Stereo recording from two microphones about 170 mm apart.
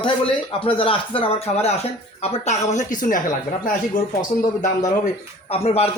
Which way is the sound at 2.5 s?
45° left (ahead or behind).